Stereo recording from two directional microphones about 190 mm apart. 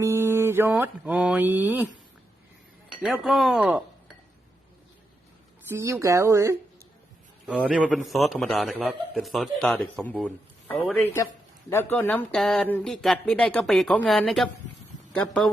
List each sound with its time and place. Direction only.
0.0 s mantra: 15° right (ahead or behind)
3.0 s speech: centre (ahead or behind)
5.6 s a man's voice: 10° right (ahead or behind); by 14.5 s 5° left (ahead or behind)